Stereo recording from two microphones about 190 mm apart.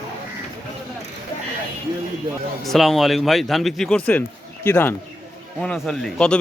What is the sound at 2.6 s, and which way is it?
A man's voice, centre (ahead or behind).